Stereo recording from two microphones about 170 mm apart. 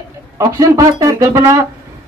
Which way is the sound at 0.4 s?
20° right (ahead or behind).